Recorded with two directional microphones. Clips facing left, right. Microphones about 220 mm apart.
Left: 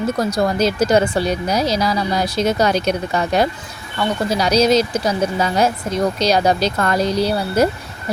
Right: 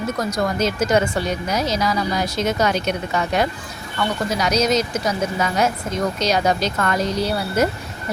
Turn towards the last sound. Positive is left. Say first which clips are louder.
# left 3 dB
turn(degrees=35)  # may be behind; listen again after turning